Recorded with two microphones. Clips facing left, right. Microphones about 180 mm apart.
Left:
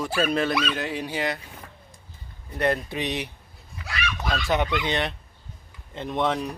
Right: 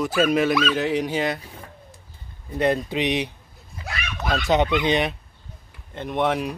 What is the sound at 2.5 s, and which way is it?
Speech, 15° right (ahead or behind).